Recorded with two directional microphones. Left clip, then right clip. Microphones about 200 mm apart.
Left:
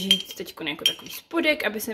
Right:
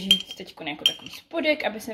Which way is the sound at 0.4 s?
20° left (ahead or behind).